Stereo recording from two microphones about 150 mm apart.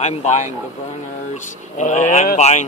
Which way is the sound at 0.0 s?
50° left (ahead or behind).